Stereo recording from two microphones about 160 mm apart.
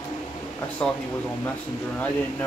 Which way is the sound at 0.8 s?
5° left (ahead or behind).